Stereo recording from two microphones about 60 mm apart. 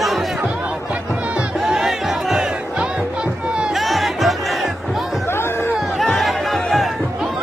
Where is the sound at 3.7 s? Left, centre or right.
Centre.